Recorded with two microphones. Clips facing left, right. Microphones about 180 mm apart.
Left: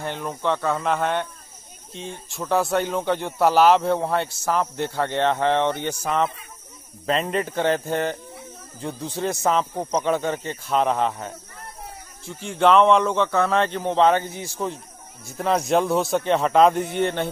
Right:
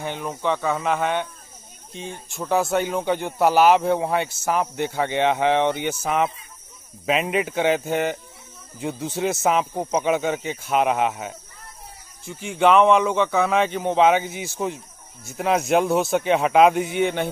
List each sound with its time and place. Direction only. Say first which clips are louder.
0.0 s speech: even; 5° right (ahead or behind)
2.4 s speech: even; 5° right (ahead or behind)